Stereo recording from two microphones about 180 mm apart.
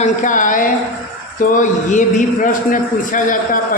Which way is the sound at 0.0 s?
45° left (ahead or behind).